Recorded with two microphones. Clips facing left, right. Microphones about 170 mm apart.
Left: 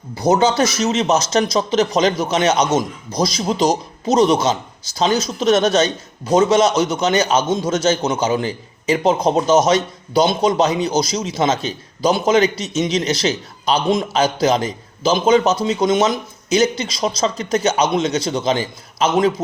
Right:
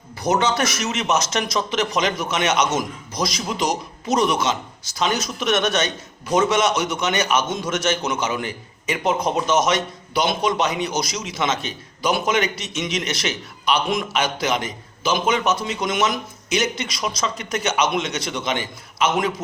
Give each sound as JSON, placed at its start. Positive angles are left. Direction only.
{"t": 0.2, "sound": "a man's voice", "side_deg": 30}